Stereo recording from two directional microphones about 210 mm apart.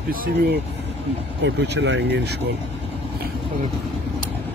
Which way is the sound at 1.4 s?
60° right (ahead or behind).